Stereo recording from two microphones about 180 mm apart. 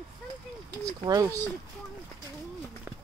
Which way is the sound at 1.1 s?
20° right (ahead or behind).